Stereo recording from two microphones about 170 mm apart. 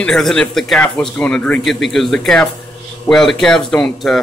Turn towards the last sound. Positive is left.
turn(degrees=5)  # may be behind; listen again after turning